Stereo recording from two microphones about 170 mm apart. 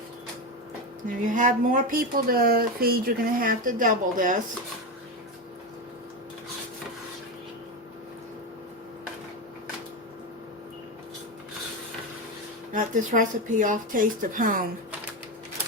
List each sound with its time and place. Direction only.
1.0 s speech: 50° right (ahead or behind)
12.7 s speech: 50° right (ahead or behind)